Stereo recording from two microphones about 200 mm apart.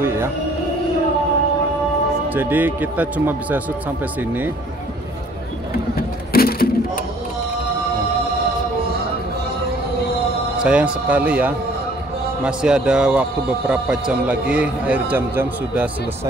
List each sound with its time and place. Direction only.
0.0 s music: 15° right (ahead or behind)
2.3 s speech: 10° right (ahead or behind)
6.3 s music: 50° left (ahead or behind)
10.6 s speech: 5° right (ahead or behind)